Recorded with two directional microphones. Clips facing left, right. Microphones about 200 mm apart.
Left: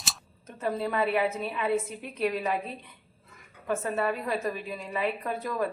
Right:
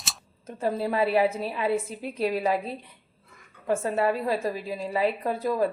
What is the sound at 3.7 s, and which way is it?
A woman's voice, 30° right (ahead or behind).